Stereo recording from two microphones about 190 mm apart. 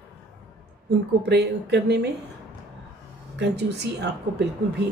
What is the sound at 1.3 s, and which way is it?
Speech, 60° right (ahead or behind).